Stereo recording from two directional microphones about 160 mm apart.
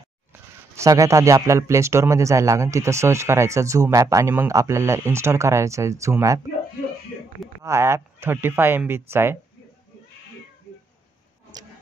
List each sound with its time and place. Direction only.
0.3 s speech: 20° right (ahead or behind)
7.6 s speech: 15° right (ahead or behind)